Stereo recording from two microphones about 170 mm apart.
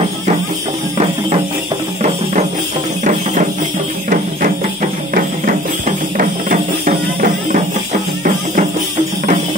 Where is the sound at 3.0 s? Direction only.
45° right (ahead or behind).